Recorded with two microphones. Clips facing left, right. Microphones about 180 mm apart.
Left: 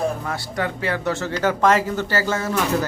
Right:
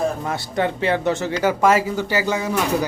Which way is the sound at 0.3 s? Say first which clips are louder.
Right 3 dB; 25° right (ahead or behind).